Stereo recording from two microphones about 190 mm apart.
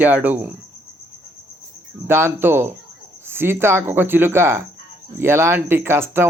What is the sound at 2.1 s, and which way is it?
Speech, 15° right (ahead or behind).